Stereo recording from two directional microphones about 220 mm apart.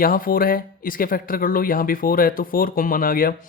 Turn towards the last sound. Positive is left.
turn(degrees=40)  # may be behind; listen again after turning